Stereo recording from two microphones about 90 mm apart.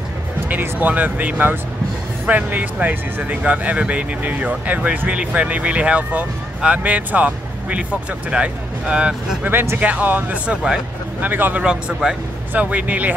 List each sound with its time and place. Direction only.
0.5 s speech: 20° right (ahead or behind)
11.6 s speech: 5° right (ahead or behind)